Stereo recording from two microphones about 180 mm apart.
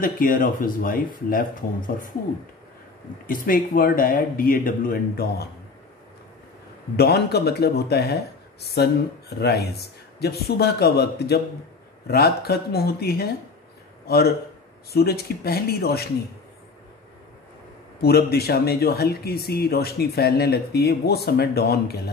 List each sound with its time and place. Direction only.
0.0 s speech: 50° left (ahead or behind)
3.3 s speech: 50° left (ahead or behind)
7.0 s a man's voice: 60° left (ahead or behind)
18.0 s speech: 60° left (ahead or behind)